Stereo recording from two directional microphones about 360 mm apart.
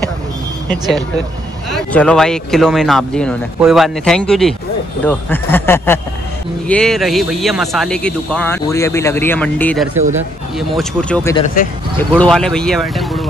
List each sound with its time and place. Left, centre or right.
0.7 s speech: centre
11.3 s speech: centre
12.0 s speech: centre